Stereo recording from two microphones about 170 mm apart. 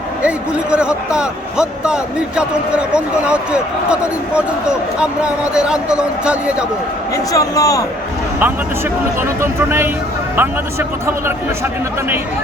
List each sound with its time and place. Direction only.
0.2 s a man's voice: 5° right (ahead or behind)
7.3 s a man's voice: 20° left (ahead or behind)
9.4 s a man's voice: 15° right (ahead or behind)